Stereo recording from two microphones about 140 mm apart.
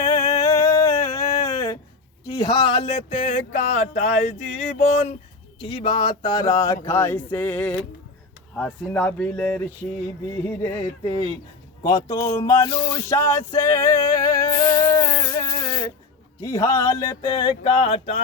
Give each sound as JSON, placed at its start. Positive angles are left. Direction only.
{"t": 0.0, "sound": "a sound", "side_deg": 20}
{"t": 2.2, "sound": "speech", "side_deg": 25}
{"t": 5.5, "sound": "speech", "side_deg": 35}
{"t": 11.8, "sound": "music", "side_deg": 25}
{"t": 12.6, "sound": "speech", "side_deg": 30}
{"t": 13.1, "sound": "music", "side_deg": 20}
{"t": 15.4, "sound": "a sound", "side_deg": 25}
{"t": 16.4, "sound": "music", "side_deg": 20}